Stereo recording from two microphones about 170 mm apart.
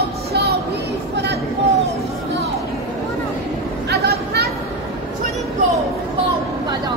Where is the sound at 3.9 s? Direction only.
70° right (ahead or behind).